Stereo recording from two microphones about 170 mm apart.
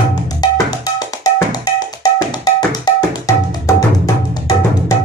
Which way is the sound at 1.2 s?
20° left (ahead or behind).